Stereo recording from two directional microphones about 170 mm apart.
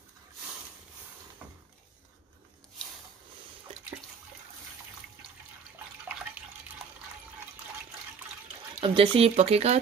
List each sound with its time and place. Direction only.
8.8 s speech: 30° right (ahead or behind)